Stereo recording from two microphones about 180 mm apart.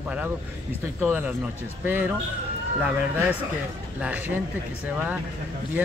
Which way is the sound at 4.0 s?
10° right (ahead or behind).